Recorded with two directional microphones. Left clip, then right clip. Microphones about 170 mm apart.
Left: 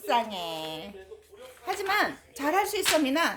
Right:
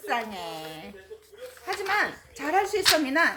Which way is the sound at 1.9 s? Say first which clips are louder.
Right 1 dB; 25° left (ahead or behind).